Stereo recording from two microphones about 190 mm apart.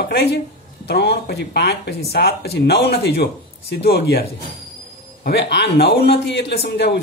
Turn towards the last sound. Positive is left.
turn(degrees=65)  # may be behind; listen again after turning